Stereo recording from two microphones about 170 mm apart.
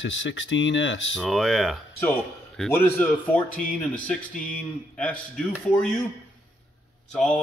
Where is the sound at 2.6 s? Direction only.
10° left (ahead or behind).